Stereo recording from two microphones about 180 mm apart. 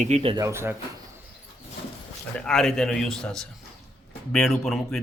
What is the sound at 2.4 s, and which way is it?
A man's voice, 5° left (ahead or behind).